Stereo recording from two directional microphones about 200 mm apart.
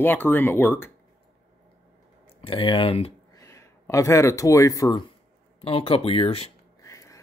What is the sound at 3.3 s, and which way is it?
Speech, 15° left (ahead or behind).